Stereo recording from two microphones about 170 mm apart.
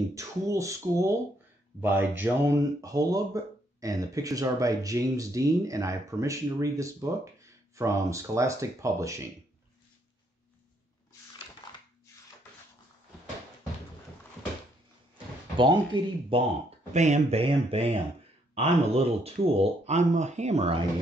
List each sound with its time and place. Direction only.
0.1 s speech: 20° right (ahead or behind)
15.5 s speech: 30° right (ahead or behind)
16.9 s speech: 45° right (ahead or behind)